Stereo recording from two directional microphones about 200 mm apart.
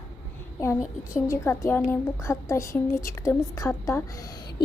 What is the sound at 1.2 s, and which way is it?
Speech, 15° left (ahead or behind).